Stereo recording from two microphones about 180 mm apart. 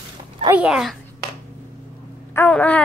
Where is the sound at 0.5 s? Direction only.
5° right (ahead or behind).